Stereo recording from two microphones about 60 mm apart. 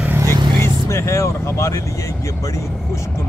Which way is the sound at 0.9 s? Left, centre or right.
Left.